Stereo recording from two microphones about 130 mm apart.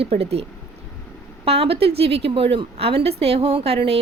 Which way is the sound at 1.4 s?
50° right (ahead or behind).